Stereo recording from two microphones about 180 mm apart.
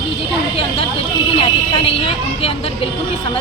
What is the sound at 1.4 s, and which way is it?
A woman's voice, 30° left (ahead or behind).